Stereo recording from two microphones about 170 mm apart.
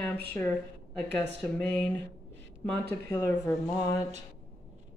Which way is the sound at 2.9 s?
15° left (ahead or behind).